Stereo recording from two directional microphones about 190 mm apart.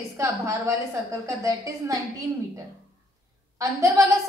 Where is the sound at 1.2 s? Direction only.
15° right (ahead or behind).